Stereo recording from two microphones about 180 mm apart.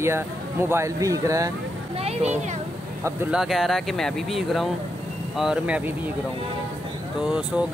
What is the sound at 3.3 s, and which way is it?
Speech, centre (ahead or behind).